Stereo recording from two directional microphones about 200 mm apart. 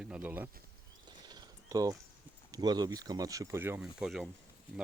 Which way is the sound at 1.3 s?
20° right (ahead or behind).